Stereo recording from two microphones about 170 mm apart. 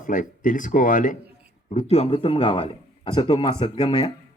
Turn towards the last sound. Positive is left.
turn(degrees=25)  # may be behind; listen again after turning